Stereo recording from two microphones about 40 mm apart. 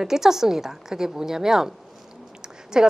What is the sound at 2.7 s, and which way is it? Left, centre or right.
Speech, centre.